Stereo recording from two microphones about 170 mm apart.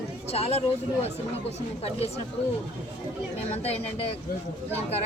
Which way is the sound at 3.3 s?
40° left (ahead or behind).